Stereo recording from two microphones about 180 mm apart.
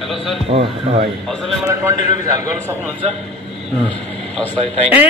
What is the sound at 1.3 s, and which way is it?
Speech, centre (ahead or behind).